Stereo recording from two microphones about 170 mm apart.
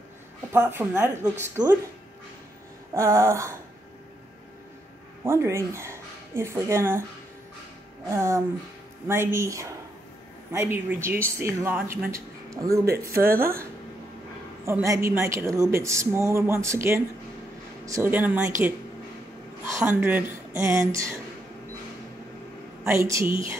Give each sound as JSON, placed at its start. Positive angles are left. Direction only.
{"t": 0.5, "sound": "speech", "side_deg": -10}
{"t": 2.9, "sound": "speech", "side_deg": -15}
{"t": 5.2, "sound": "speech", "side_deg": -15}
{"t": 8.1, "sound": "speech", "side_deg": -15}
{"t": 19.8, "sound": "speech", "side_deg": -10}
{"t": 22.8, "sound": "speech", "side_deg": -15}